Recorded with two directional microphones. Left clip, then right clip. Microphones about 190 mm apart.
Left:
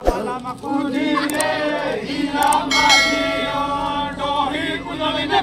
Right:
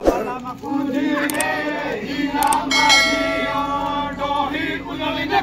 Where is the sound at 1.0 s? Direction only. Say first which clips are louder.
Left 2 dB; 15° right (ahead or behind).